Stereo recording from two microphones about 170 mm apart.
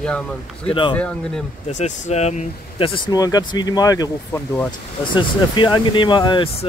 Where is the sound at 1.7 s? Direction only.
40° left (ahead or behind); by 4.7 s 10° left (ahead or behind).